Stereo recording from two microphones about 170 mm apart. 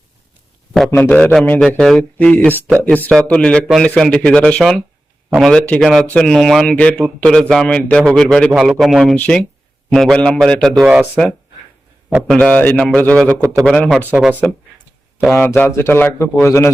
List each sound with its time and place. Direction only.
0.9 s a man's voice: 15° left (ahead or behind)
10.8 s speech: 10° right (ahead or behind)
12.3 s a man's voice: 5° left (ahead or behind)
15.4 s a man's voice: 10° left (ahead or behind)